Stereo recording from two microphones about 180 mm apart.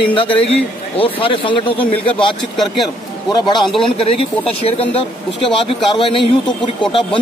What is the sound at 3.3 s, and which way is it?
Speech, 25° left (ahead or behind).